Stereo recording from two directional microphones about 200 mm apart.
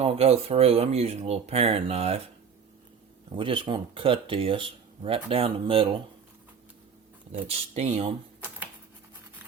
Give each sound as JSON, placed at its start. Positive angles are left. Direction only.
{"t": 0.0, "sound": "speech", "side_deg": -30}
{"t": 3.3, "sound": "speech", "side_deg": -25}
{"t": 7.7, "sound": "speech", "side_deg": -35}